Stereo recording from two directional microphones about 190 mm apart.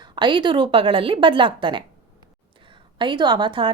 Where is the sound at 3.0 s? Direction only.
25° right (ahead or behind).